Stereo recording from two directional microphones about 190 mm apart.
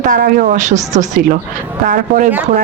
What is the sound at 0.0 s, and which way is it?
A woman's voice, 45° right (ahead or behind).